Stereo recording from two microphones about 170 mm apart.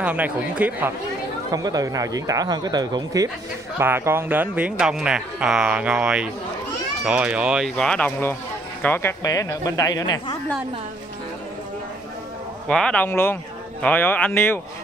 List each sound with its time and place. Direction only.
0.0 s speech: 10° right (ahead or behind)
1.5 s speech: 20° right (ahead or behind); by 7.7 s 5° right (ahead or behind)
7.7 s speech: 5° left (ahead or behind); by 10.4 s 20° left (ahead or behind)
12.6 s speech: 5° left (ahead or behind)